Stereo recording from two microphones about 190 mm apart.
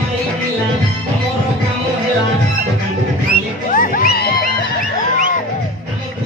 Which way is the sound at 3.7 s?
45° left (ahead or behind).